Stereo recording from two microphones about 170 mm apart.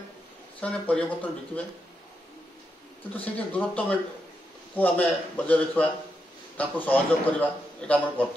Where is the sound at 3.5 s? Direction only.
10° left (ahead or behind).